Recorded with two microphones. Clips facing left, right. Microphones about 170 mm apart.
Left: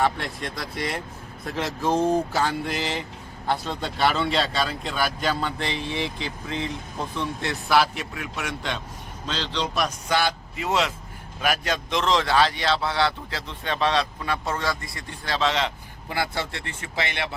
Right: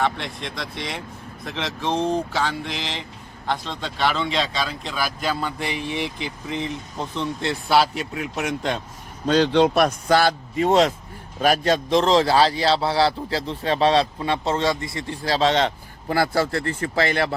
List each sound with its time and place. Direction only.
0.0 s speech: 5° left (ahead or behind); by 8.8 s 40° right (ahead or behind)
9.2 s a man's voice: 50° right (ahead or behind)
10.1 s a man's voice: 40° right (ahead or behind)